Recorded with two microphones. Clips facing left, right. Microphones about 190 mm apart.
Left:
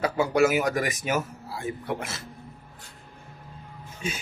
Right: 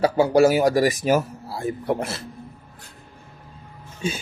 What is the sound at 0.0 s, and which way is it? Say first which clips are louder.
Speech: right 6 dB; 35° right (ahead or behind).